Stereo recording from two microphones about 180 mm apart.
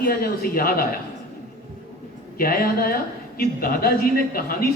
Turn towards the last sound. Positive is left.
turn(degrees=55)  # may be behind; listen again after turning